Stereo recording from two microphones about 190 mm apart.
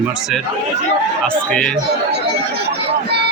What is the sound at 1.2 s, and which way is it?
Speech, 5° left (ahead or behind).